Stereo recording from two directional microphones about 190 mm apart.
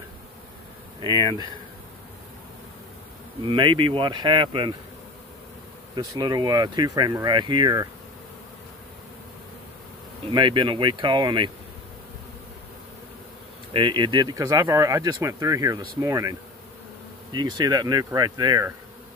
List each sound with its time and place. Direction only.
1.0 s speech: 20° right (ahead or behind)
3.4 s speech: 25° right (ahead or behind)
5.9 s speech: 20° right (ahead or behind)
10.3 s speech: 25° right (ahead or behind)
13.7 s speech: 25° right (ahead or behind)